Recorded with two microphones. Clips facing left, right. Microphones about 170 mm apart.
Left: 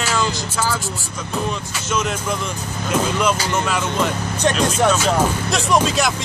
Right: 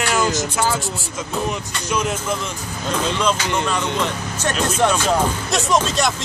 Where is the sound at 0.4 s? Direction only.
20° right (ahead or behind).